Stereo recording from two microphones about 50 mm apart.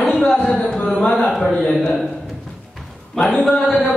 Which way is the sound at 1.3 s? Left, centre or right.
Centre.